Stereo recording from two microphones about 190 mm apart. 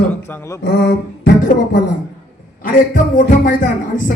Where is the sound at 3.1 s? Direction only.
45° left (ahead or behind).